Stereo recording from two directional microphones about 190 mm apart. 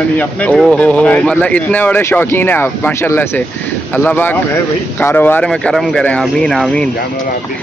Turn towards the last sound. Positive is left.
turn(degrees=5)  # may be behind; listen again after turning